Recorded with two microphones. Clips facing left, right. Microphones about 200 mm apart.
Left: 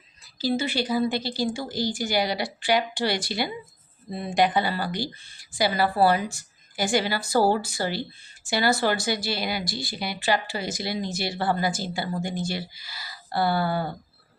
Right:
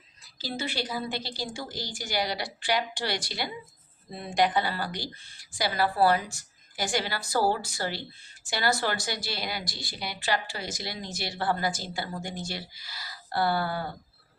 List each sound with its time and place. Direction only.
0.3 s a woman's voice: 5° left (ahead or behind)
7.3 s speech: 30° left (ahead or behind)
7.7 s a woman's voice: 5° left (ahead or behind)